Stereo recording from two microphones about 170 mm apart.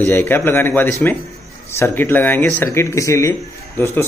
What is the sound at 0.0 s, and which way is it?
Speech, 10° left (ahead or behind).